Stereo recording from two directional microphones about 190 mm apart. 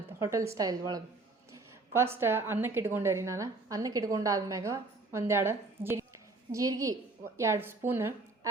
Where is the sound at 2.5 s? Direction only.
10° right (ahead or behind).